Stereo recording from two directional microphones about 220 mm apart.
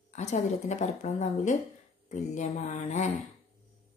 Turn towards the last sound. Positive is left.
turn(degrees=35)  # may be behind; listen again after turning